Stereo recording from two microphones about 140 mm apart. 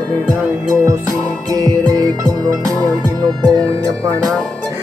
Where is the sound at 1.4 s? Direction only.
30° right (ahead or behind).